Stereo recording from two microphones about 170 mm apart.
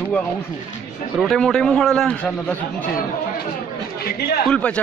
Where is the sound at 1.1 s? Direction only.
Centre (ahead or behind).